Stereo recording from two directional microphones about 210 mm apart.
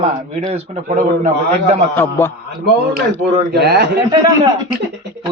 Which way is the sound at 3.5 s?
50° right (ahead or behind).